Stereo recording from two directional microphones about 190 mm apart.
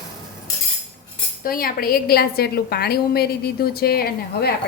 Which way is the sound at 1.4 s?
50° left (ahead or behind).